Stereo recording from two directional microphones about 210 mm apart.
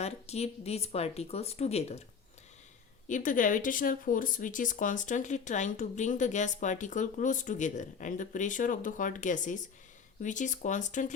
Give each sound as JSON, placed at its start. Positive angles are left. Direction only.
{"t": 0.0, "sound": "speech", "side_deg": 30}
{"t": 3.1, "sound": "speech", "side_deg": 40}